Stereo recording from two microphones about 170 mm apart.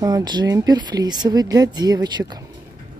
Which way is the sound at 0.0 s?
25° right (ahead or behind).